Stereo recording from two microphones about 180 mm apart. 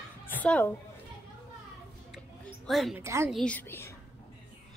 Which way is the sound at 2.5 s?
Centre (ahead or behind).